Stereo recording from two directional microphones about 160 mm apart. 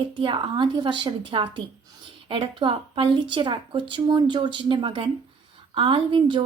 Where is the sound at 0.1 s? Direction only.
30° right (ahead or behind).